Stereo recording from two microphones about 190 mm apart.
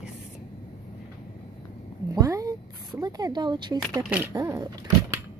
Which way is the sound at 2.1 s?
15° right (ahead or behind).